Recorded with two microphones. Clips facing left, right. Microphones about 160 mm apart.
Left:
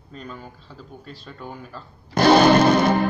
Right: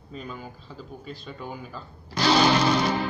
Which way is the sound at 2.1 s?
55° left (ahead or behind).